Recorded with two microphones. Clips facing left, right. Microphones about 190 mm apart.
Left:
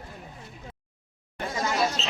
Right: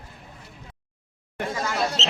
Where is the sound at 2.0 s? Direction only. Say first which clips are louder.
Right 3 dB; 85° right.